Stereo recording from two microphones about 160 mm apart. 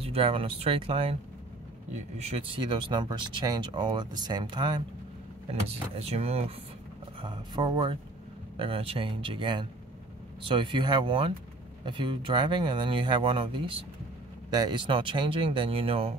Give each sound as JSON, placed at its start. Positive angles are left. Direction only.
{"t": 0.0, "sound": "speech", "side_deg": -35}
{"t": 2.1, "sound": "speech", "side_deg": -40}
{"t": 5.5, "sound": "speech", "side_deg": -40}